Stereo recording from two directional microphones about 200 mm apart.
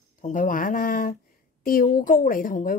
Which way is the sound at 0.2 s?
40° left (ahead or behind).